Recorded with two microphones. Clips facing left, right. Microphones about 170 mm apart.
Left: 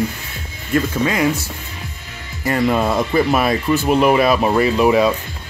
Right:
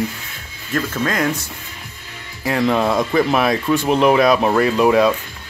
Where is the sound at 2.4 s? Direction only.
Centre (ahead or behind).